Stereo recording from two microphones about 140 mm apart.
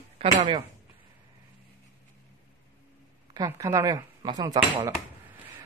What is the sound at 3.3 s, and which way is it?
Speech, 25° right (ahead or behind).